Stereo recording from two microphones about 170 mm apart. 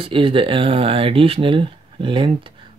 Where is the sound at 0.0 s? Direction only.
30° right (ahead or behind).